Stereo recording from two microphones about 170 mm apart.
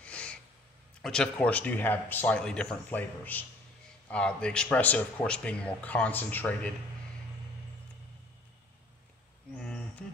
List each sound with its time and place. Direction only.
0.0 s snort: 5° left (ahead or behind)
1.0 s speech: 5° left (ahead or behind)
9.6 s a sound: 5° left (ahead or behind)